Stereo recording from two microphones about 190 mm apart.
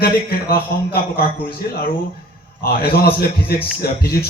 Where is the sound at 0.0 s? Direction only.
50° left (ahead or behind).